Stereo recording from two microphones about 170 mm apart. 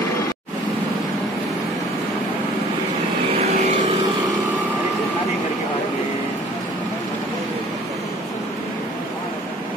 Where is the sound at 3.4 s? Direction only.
45° right (ahead or behind).